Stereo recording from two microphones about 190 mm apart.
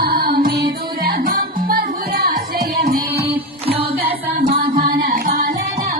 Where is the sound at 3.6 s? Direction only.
30° right (ahead or behind).